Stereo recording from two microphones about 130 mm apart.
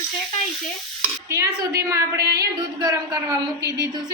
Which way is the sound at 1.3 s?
25° right (ahead or behind).